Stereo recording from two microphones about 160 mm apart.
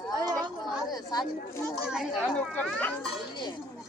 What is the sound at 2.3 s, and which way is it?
Speech, 10° left (ahead or behind).